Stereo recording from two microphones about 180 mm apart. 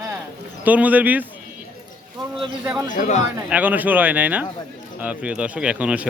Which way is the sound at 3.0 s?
40° left (ahead or behind).